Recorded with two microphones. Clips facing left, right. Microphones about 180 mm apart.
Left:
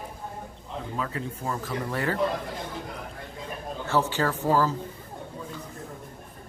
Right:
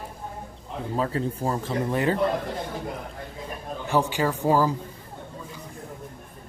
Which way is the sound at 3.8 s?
15° right (ahead or behind).